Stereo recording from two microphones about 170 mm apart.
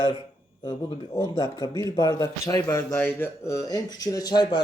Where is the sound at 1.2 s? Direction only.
20° left (ahead or behind).